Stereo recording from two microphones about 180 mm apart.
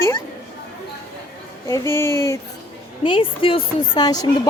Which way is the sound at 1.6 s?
15° left (ahead or behind).